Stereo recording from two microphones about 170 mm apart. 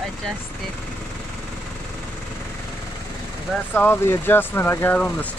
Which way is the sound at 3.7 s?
10° left (ahead or behind).